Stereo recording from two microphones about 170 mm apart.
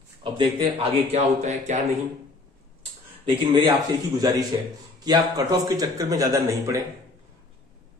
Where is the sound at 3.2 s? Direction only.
30° right (ahead or behind).